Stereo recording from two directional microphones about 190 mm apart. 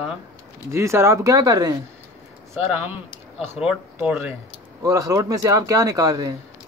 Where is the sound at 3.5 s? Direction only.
10° right (ahead or behind).